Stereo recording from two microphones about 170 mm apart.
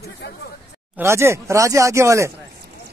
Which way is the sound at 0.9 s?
15° right (ahead or behind).